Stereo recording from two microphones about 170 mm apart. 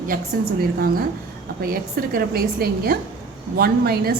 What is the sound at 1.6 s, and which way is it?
A woman's voice, 60° right (ahead or behind).